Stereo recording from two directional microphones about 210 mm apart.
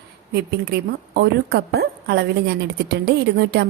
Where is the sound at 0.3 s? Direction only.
50° right (ahead or behind).